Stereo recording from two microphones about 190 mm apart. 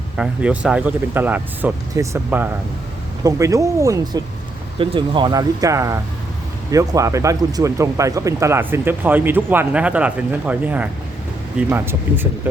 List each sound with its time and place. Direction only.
0.2 s speech: 5° right (ahead or behind)